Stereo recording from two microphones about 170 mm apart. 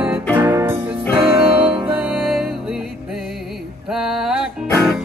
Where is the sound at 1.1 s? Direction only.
35° right (ahead or behind).